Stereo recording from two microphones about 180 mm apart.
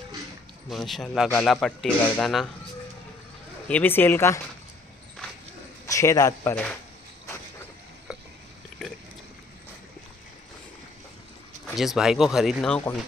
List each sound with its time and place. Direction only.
0.7 s a man's voice: centre (ahead or behind)
3.6 s speech: 10° left (ahead or behind)
5.9 s a man's voice: 15° left (ahead or behind)
8.8 s a sound: 5° left (ahead or behind)
11.6 s a man's voice: centre (ahead or behind)